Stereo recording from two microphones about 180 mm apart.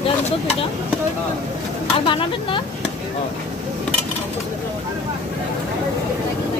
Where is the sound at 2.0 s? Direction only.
30° left (ahead or behind).